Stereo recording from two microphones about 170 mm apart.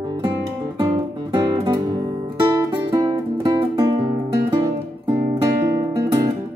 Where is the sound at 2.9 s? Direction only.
20° right (ahead or behind).